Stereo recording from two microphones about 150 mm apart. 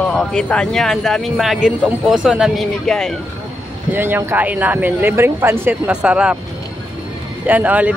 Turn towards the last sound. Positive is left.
turn(degrees=-10)  # may be behind; listen again after turning